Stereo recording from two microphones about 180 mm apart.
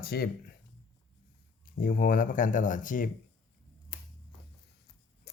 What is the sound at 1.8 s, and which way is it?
Speech, 50° left (ahead or behind).